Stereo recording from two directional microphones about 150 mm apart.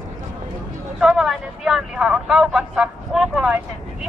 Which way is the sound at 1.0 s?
5° right (ahead or behind).